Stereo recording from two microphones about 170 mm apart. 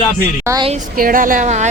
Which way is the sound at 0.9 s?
55° right (ahead or behind).